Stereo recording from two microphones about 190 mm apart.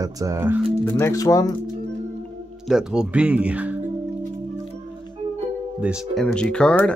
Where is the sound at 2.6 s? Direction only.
5° right (ahead or behind).